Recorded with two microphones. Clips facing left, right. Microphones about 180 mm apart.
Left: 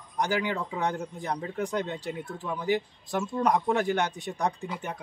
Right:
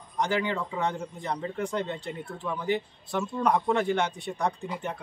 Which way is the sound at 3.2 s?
15° left (ahead or behind).